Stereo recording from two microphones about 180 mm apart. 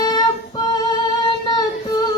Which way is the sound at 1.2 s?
20° left (ahead or behind).